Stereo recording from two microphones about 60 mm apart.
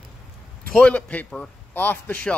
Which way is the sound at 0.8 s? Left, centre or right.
Left.